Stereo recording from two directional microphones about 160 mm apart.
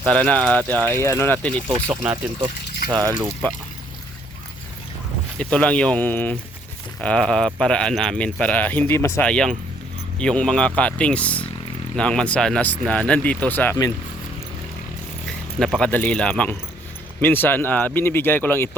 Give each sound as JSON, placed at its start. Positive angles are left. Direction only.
{"t": 0.0, "sound": "speech", "side_deg": 5}
{"t": 2.9, "sound": "speech", "side_deg": -20}
{"t": 5.4, "sound": "speech", "side_deg": 5}
{"t": 15.5, "sound": "speech", "side_deg": 5}